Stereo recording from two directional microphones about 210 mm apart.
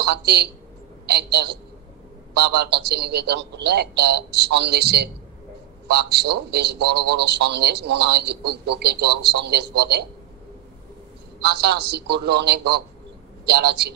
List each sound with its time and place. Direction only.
0.0 s a woman's voice: 50° right (ahead or behind)
11.6 s a man's voice: 50° right (ahead or behind)